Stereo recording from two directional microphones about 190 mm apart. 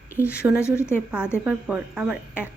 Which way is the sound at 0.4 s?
5° right (ahead or behind).